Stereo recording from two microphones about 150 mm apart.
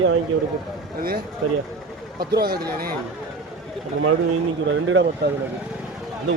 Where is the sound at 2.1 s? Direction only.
90° right.